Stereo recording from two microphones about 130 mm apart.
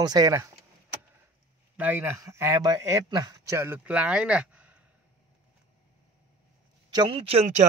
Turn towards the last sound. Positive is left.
turn(degrees=-50)  # may be behind; listen again after turning